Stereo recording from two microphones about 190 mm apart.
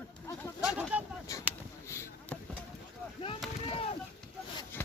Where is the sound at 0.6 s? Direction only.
5° right (ahead or behind).